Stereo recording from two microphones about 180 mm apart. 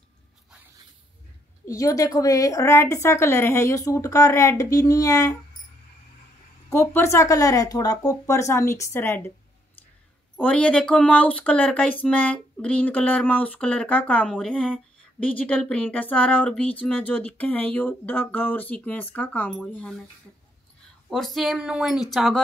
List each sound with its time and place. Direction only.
1.7 s speech: 20° left (ahead or behind)
6.7 s speech: 15° left (ahead or behind)
10.4 s speech: 5° left (ahead or behind)
21.1 s a woman's voice: centre (ahead or behind)